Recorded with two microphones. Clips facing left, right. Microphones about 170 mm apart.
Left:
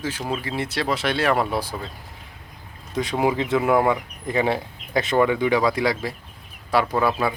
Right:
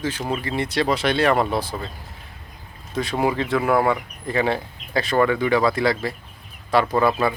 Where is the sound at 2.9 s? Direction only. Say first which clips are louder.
Even; 15° left (ahead or behind).